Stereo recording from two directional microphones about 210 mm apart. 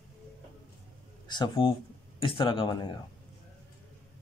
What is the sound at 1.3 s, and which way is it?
Speech, 20° left (ahead or behind).